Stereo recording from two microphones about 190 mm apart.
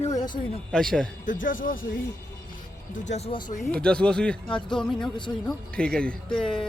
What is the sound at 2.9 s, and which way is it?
Speech, 35° left (ahead or behind).